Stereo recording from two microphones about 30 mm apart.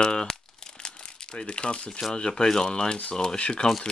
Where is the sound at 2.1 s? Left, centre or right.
Left.